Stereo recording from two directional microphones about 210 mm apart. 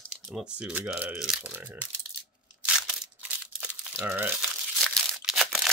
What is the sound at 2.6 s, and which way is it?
Crumpling, 5° right (ahead or behind).